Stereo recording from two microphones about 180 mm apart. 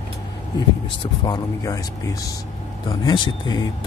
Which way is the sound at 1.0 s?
20° left (ahead or behind).